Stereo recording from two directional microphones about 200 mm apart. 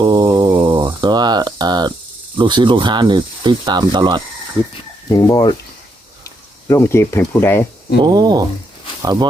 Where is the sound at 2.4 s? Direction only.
25° right (ahead or behind).